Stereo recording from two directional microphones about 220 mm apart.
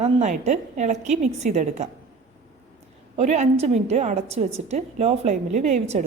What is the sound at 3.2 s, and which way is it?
A woman's voice, 30° right (ahead or behind).